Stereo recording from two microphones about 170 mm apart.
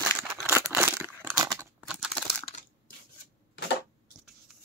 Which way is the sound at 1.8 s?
5° right (ahead or behind).